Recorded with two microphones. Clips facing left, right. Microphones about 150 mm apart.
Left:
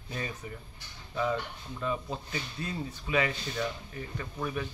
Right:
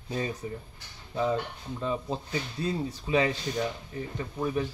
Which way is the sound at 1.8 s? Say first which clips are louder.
Right 2 dB; 30° right (ahead or behind).